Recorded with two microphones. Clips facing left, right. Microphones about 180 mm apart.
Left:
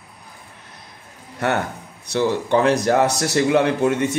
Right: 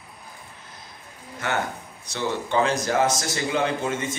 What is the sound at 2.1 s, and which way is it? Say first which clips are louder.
A man's voice: left 8 dB; 60° left (ahead or behind).